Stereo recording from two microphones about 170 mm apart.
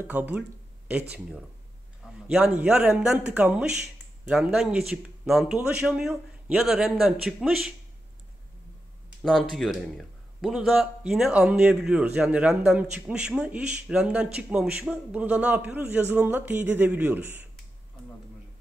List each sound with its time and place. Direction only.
0.0 s a man's voice: 10° right (ahead or behind)
9.2 s a man's voice: centre (ahead or behind)